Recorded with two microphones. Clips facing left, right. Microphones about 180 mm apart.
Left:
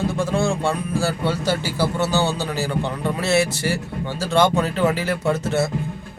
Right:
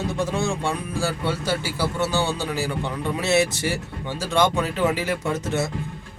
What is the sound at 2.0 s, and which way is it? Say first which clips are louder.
Speech: left 1 dB; 40° left (ahead or behind).